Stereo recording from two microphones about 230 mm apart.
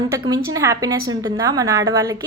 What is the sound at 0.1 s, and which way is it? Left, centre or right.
A woman's voice, centre.